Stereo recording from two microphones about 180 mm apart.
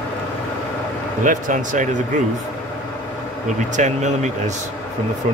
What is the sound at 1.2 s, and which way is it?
Speech, 45° right (ahead or behind).